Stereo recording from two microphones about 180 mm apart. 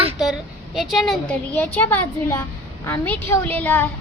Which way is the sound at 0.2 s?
Centre (ahead or behind).